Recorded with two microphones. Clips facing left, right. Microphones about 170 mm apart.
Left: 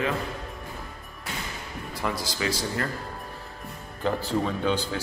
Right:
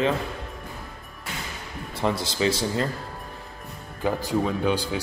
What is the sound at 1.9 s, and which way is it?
Speech, 25° right (ahead or behind).